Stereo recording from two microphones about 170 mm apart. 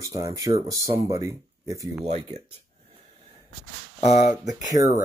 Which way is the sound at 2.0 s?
40° right (ahead or behind).